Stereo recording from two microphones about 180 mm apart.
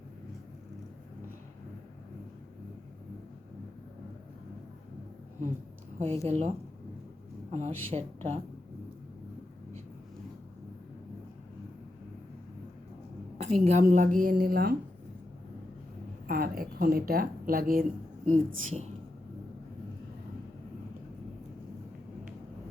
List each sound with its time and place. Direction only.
6.2 s a woman's voice: 35° right (ahead or behind)
7.5 s a woman's voice: 35° right (ahead or behind)
13.4 s a woman's voice: 40° right (ahead or behind); by 14.8 s 55° right (ahead or behind)
16.2 s speech: 55° right (ahead or behind)
18.3 s a woman's voice: 35° right (ahead or behind)